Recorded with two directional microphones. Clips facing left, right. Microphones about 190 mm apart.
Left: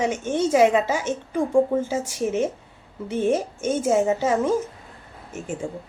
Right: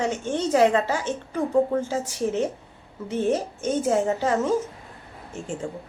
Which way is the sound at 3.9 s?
10° left (ahead or behind).